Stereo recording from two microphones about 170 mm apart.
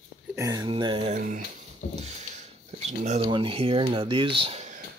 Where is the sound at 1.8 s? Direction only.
45° left (ahead or behind).